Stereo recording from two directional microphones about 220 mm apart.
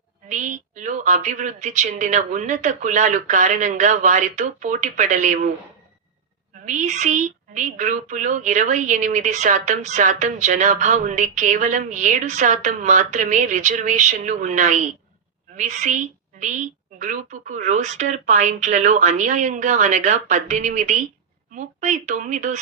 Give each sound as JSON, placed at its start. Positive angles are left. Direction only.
{"t": 0.3, "sound": "a woman's voice", "side_deg": -35}
{"t": 6.7, "sound": "a woman's voice", "side_deg": -35}